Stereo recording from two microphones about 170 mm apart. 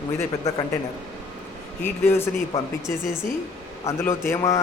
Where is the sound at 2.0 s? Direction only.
15° left (ahead or behind).